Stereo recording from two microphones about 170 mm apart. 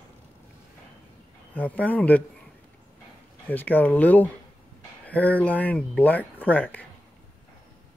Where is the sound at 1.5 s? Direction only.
10° left (ahead or behind).